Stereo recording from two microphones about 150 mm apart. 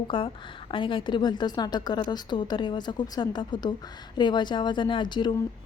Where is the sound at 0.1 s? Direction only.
35° left (ahead or behind).